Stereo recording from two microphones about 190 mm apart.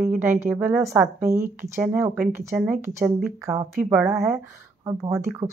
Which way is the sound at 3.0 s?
Centre (ahead or behind).